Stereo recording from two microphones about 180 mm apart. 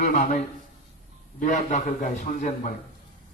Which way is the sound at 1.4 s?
45° left (ahead or behind).